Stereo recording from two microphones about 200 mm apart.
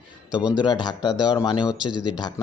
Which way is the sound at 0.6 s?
20° left (ahead or behind).